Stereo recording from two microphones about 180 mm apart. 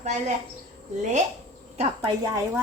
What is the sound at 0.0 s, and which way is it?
Speech, 40° right (ahead or behind).